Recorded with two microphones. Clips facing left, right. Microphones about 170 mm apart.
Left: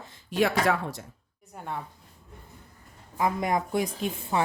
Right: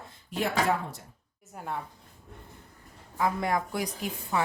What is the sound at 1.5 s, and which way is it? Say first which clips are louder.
Speech: even; centre (ahead or behind).